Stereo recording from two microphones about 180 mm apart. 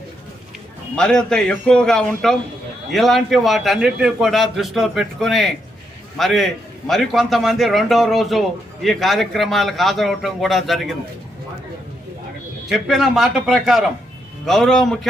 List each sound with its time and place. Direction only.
0.9 s a man's voice: 5° left (ahead or behind)
12.7 s a man's voice: centre (ahead or behind)